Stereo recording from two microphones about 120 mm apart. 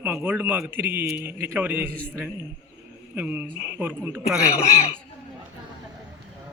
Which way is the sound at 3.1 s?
15° right (ahead or behind).